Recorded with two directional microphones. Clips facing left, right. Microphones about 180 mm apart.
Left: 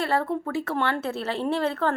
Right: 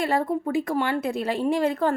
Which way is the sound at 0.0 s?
15° right (ahead or behind).